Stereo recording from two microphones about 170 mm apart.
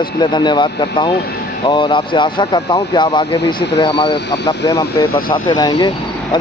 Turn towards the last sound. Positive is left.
turn(degrees=25)  # may be behind; listen again after turning